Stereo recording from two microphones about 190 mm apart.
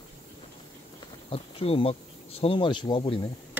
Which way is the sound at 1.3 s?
30° left (ahead or behind).